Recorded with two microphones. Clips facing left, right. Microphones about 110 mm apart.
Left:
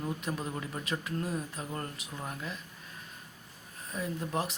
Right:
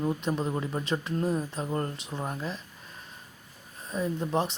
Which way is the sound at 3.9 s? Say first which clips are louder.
Right 6 dB; 25° right (ahead or behind).